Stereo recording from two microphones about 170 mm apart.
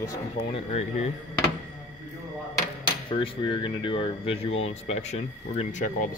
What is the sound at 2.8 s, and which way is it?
Speech, 30° left (ahead or behind).